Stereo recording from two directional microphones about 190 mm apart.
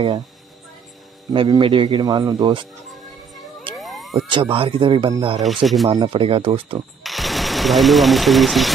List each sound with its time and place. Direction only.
1.3 s a man's voice: 25° right (ahead or behind)
3.7 s police car: centre (ahead or behind)
4.3 s a man's voice: 30° right (ahead or behind)
5.4 s speech: centre (ahead or behind)
5.9 s a man's voice: 30° right (ahead or behind)
7.0 s speech: centre (ahead or behind)